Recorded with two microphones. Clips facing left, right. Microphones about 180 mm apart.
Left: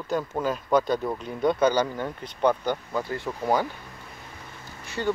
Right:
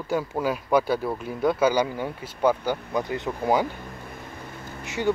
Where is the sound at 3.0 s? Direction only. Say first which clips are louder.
Right 2 dB; 20° right (ahead or behind).